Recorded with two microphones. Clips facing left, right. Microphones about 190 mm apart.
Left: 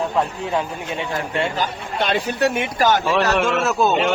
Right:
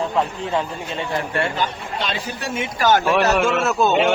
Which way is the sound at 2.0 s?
60° left (ahead or behind).